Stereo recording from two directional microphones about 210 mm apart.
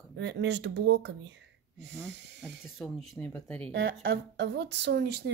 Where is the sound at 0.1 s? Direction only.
60° right (ahead or behind).